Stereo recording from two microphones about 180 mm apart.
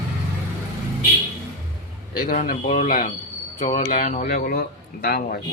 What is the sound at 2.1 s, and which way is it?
Speech, 50° left (ahead or behind).